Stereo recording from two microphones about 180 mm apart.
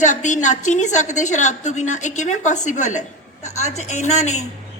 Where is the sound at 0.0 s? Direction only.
40° left (ahead or behind).